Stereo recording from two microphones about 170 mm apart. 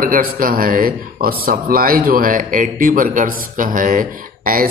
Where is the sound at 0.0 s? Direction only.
55° right (ahead or behind).